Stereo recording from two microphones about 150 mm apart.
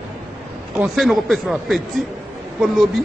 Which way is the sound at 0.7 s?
Centre (ahead or behind).